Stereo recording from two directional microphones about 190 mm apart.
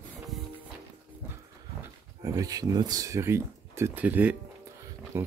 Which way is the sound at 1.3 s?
15° right (ahead or behind).